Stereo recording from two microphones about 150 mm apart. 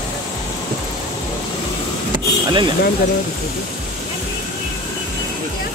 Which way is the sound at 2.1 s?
30° right (ahead or behind).